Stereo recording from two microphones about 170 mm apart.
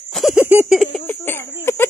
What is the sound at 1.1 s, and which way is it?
Speech, 15° left (ahead or behind).